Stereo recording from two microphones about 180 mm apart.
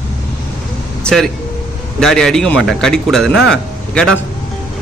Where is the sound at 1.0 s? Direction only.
Centre (ahead or behind).